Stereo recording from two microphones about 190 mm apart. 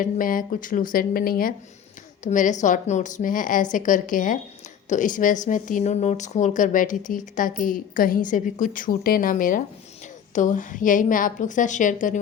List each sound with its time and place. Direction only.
0.0 s a woman's voice: 45° left (ahead or behind)